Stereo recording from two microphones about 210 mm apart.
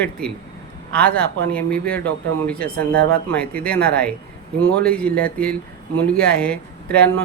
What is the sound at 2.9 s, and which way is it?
Speech, 50° right (ahead or behind).